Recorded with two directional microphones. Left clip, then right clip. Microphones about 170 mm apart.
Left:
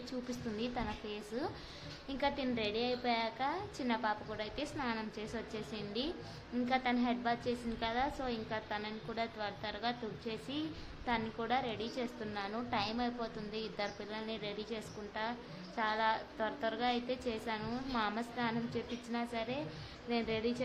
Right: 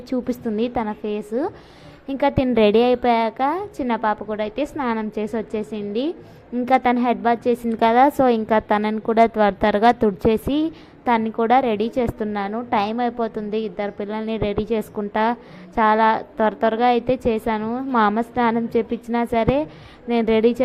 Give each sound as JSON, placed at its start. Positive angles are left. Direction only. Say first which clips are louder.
{"t": 0.3, "sound": "a woman's voice", "louder": "right 15 dB", "side_deg": -40}